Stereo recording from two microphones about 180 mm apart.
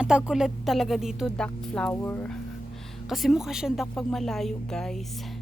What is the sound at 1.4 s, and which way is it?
Speech, 5° left (ahead or behind).